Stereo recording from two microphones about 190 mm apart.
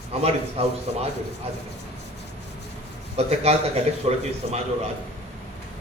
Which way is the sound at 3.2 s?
35° right (ahead or behind).